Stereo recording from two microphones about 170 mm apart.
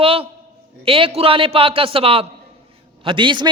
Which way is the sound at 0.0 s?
35° right (ahead or behind).